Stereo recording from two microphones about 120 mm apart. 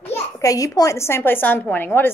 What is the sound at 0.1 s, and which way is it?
A child's voice, 30° left (ahead or behind).